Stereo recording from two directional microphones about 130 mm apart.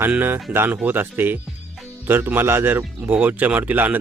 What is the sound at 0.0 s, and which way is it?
Speech, 15° right (ahead or behind).